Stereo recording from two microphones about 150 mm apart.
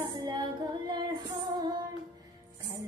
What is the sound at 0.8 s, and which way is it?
Female singing, 30° right (ahead or behind).